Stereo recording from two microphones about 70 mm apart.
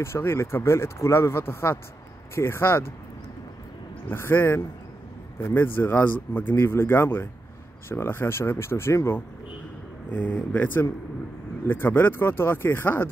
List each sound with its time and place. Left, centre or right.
0.0 s speech: left
4.1 s speech: left
10.1 s speech: left